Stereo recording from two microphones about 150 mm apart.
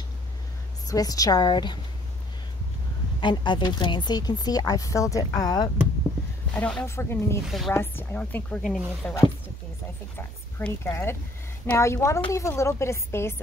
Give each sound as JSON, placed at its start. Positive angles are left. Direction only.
{"t": 0.8, "sound": "a woman's voice", "side_deg": 25}
{"t": 3.2, "sound": "a woman's voice", "side_deg": 30}
{"t": 6.5, "sound": "a woman's voice", "side_deg": 10}
{"t": 7.4, "sound": "speech", "side_deg": 0}
{"t": 7.7, "sound": "a woman's voice", "side_deg": 15}